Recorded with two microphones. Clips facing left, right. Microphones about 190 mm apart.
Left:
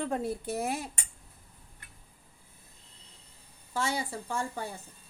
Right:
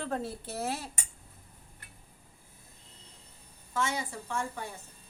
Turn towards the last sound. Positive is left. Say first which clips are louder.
# left 1 dB
turn(degrees=35)  # may be behind; listen again after turning